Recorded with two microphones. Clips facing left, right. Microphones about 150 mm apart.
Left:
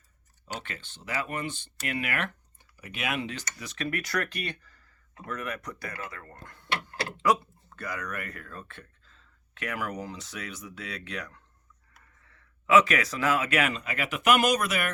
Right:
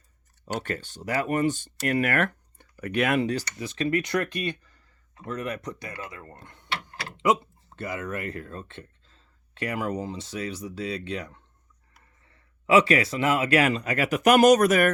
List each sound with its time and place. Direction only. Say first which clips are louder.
0.4 s speech: right 8 dB; 40° right (ahead or behind)